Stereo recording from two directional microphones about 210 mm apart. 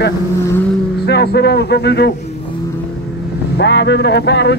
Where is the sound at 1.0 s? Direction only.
50° left (ahead or behind).